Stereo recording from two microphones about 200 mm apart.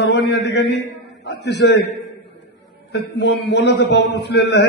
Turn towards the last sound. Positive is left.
turn(degrees=55)  # may be behind; listen again after turning